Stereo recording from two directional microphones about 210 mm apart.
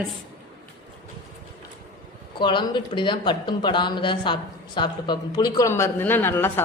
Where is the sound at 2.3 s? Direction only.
20° left (ahead or behind).